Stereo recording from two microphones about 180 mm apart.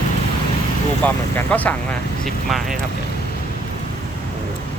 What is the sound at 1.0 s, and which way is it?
Speech, 10° left (ahead or behind).